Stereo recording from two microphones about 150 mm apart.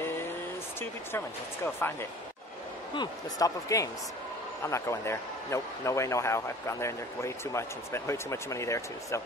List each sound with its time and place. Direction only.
0.7 s speech: 15° left (ahead or behind)
2.9 s speech: 25° left (ahead or behind)